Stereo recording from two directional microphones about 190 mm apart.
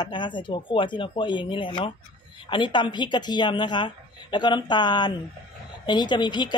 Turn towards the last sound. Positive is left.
turn(degrees=25)  # may be behind; listen again after turning